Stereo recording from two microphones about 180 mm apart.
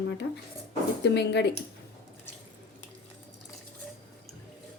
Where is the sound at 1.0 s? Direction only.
70° left (ahead or behind).